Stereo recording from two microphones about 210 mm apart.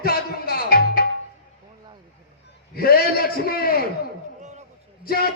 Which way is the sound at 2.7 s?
45° left (ahead or behind).